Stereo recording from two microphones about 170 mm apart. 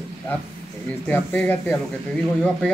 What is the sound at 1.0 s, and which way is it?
Speech, 10° left (ahead or behind).